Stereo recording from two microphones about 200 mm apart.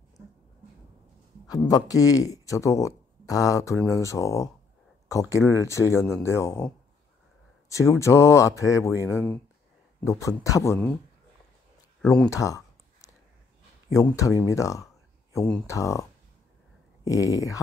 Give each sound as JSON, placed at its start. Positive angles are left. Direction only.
{"t": 1.5, "sound": "speech", "side_deg": 20}
{"t": 7.7, "sound": "speech", "side_deg": 15}
{"t": 12.0, "sound": "speech", "side_deg": 5}
{"t": 12.3, "sound": "a sound", "side_deg": 15}
{"t": 13.9, "sound": "speech", "side_deg": 15}